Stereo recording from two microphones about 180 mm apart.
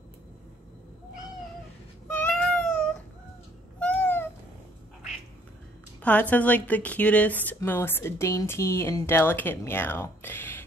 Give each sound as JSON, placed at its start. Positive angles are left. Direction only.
{"t": 2.0, "sound": "cat", "side_deg": 10}
{"t": 3.8, "sound": "babbling", "side_deg": 10}
{"t": 6.0, "sound": "a woman's voice", "side_deg": 10}